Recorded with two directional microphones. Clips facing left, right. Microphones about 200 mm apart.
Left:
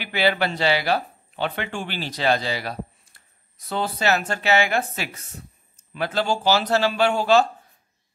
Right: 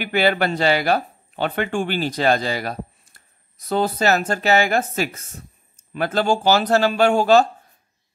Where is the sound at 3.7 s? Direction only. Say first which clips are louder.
Right 4 dB; 45° right (ahead or behind).